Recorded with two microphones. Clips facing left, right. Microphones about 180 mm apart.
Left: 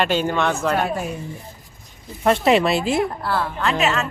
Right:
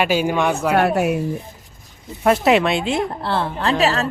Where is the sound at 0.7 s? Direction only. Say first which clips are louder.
Right 6 dB; 70° right (ahead or behind).